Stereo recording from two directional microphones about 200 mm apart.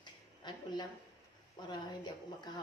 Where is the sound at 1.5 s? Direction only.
20° left (ahead or behind).